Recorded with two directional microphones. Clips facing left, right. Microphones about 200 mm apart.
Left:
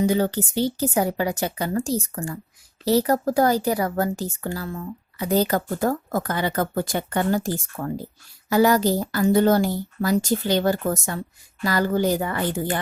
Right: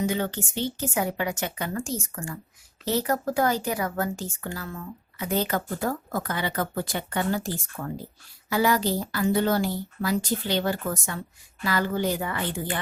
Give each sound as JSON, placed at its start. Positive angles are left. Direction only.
{"t": 0.0, "sound": "a woman's voice", "side_deg": 35}